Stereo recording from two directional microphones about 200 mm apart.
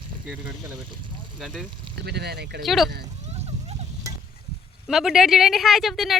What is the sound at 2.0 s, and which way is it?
Speech, 55° right (ahead or behind).